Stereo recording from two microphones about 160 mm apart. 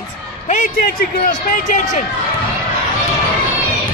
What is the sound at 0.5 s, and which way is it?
Speech, 60° left (ahead or behind).